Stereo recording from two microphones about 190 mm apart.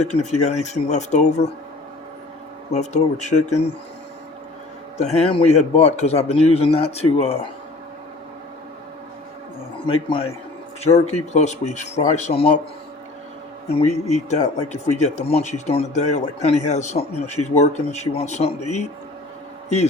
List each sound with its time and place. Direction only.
0.0 s speech: 35° left (ahead or behind)
2.7 s speech: 35° left (ahead or behind)
4.9 s speech: 35° left (ahead or behind)
10.1 s speech: 30° left (ahead or behind)
13.7 s speech: 35° left (ahead or behind)